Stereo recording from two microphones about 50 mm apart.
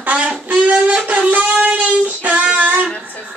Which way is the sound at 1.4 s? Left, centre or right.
Right.